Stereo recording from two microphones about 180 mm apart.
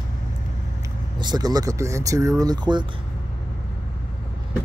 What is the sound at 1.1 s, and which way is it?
Speech, 20° right (ahead or behind).